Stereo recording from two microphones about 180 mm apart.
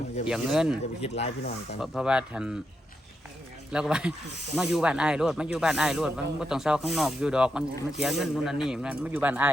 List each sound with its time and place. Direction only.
0.3 s speech: 5° right (ahead or behind)
1.0 s speech: 35° left (ahead or behind)
1.8 s speech: 5° right (ahead or behind)
3.7 s speech: 5° right (ahead or behind)